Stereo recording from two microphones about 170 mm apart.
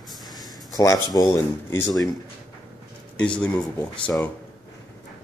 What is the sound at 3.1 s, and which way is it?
Speech, 5° left (ahead or behind).